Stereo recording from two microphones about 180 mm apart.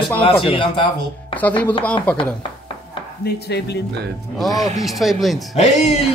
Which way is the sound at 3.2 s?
65° left (ahead or behind).